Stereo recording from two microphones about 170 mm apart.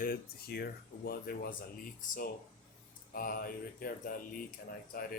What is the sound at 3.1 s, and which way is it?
Mantra, 60° left (ahead or behind).